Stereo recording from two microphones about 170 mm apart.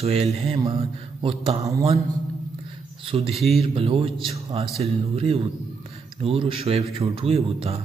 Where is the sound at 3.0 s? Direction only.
35° right (ahead or behind).